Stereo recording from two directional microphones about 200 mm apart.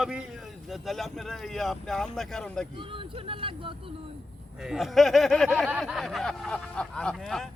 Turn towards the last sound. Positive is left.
turn(degrees=5)  # may be behind; listen again after turning